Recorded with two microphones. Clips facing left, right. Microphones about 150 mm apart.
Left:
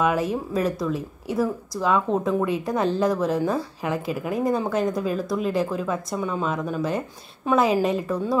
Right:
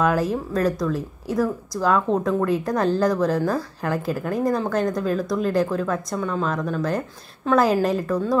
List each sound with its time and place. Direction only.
0.0 s speech: centre (ahead or behind)